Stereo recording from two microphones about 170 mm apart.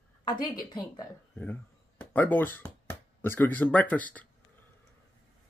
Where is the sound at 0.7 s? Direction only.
25° left (ahead or behind).